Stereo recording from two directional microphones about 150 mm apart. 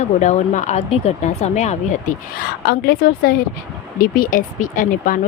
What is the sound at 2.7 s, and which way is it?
A woman's voice, 85° left.